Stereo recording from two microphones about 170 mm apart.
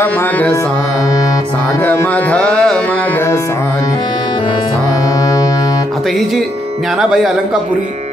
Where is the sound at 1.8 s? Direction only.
10° left (ahead or behind).